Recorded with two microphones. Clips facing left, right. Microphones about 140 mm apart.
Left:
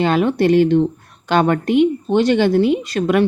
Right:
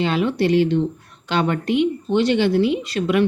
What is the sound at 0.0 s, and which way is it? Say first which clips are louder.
Speech: left 4 dB; 50° left (ahead or behind).